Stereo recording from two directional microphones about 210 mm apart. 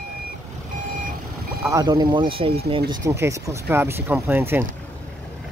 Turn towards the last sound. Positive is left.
turn(degrees=-10)  # may be behind; listen again after turning